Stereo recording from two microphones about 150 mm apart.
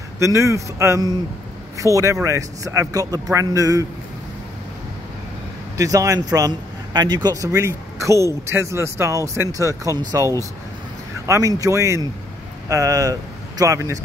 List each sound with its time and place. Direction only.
0.2 s a man's voice: 20° right (ahead or behind)
5.8 s a man's voice: 20° right (ahead or behind)